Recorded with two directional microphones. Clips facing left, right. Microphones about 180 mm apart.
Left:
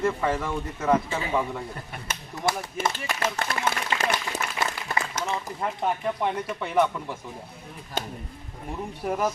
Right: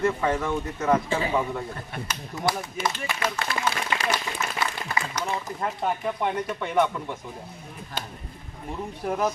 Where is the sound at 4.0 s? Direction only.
50° left (ahead or behind).